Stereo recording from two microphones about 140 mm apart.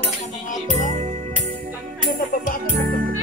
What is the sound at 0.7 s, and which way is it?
Music, 60° right (ahead or behind).